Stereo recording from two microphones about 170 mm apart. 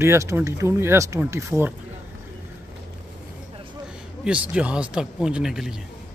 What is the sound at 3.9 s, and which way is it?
Speech, 5° right (ahead or behind).